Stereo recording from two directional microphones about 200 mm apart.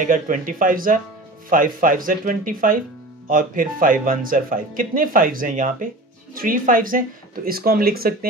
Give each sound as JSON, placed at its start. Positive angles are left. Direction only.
{"t": 0.0, "sound": "speech", "side_deg": -45}